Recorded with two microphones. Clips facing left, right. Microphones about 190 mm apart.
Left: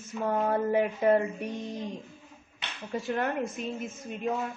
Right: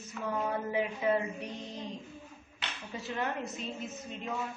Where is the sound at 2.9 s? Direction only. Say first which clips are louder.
Left 6 dB; 50° left (ahead or behind).